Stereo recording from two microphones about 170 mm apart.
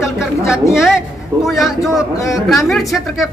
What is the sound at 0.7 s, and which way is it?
A man's voice, centre (ahead or behind).